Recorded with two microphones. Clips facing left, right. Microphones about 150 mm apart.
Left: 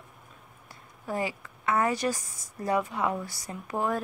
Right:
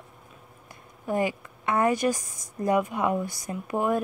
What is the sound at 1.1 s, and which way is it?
Speech, 15° right (ahead or behind).